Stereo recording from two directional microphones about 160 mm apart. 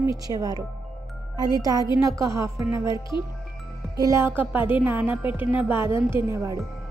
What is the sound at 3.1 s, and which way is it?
Speech, 30° left (ahead or behind).